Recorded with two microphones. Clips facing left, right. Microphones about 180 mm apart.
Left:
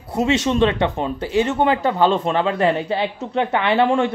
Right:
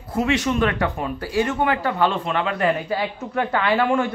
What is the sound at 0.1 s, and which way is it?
Speech, 25° left (ahead or behind).